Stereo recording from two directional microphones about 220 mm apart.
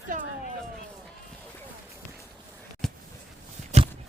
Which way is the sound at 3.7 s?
30° right (ahead or behind).